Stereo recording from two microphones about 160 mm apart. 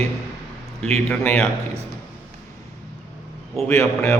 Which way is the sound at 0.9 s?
10° left (ahead or behind).